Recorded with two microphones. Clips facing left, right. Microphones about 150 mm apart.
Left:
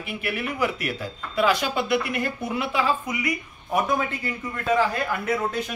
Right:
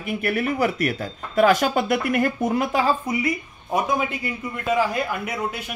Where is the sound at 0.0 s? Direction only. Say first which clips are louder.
Right 6 dB; 45° right (ahead or behind).